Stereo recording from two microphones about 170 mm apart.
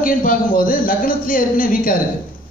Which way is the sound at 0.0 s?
55° left (ahead or behind).